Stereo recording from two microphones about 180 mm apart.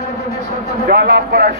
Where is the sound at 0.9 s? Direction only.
60° right (ahead or behind).